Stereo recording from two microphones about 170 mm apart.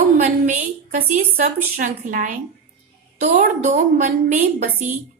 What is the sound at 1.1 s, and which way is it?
A woman's voice, 45° right (ahead or behind).